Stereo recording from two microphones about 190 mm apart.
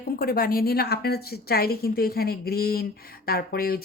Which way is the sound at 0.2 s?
50° left (ahead or behind).